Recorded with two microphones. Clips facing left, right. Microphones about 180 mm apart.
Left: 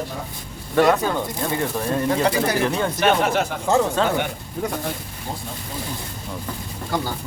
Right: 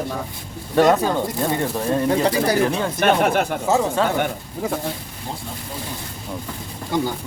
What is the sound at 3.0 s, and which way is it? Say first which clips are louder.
Speech: right 1 dB; 55° right (ahead or behind).